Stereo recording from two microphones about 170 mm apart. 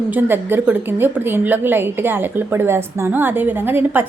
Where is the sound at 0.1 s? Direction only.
10° right (ahead or behind).